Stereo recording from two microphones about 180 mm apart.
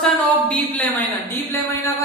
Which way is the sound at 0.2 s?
10° left (ahead or behind).